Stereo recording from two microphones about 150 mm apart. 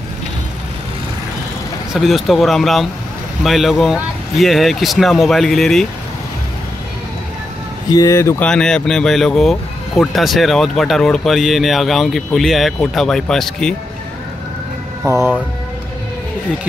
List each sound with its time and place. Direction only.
2.0 s speech: centre (ahead or behind)
7.9 s speech: 20° left (ahead or behind)
8.5 s speech: 5° left (ahead or behind)
15.0 s speech: 20° right (ahead or behind)